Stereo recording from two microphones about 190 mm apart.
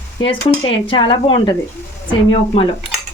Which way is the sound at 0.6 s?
25° left (ahead or behind).